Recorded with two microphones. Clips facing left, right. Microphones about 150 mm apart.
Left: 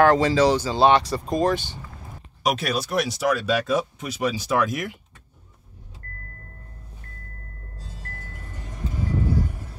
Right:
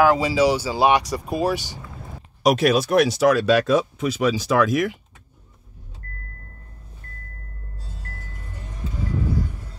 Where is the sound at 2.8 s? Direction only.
65° right (ahead or behind); by 4.9 s 90° right.